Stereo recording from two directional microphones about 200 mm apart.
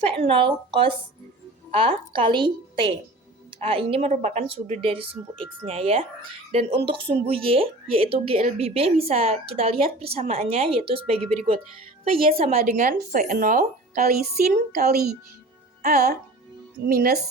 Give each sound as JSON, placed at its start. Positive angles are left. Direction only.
{"t": 0.0, "sound": "a woman's voice", "side_deg": -30}